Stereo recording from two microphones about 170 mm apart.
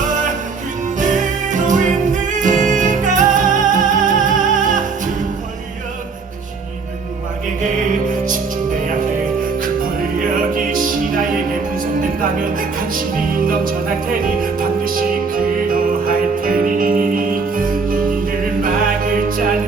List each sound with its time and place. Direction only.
0.9 s music: 50° right (ahead or behind)
10.7 s music: 55° right (ahead or behind)
12.4 s music: 55° right (ahead or behind)